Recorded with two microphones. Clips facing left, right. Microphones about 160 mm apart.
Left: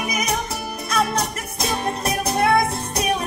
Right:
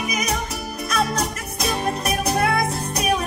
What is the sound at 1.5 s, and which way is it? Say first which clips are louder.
Music: right 1 dB; 30° left (ahead or behind).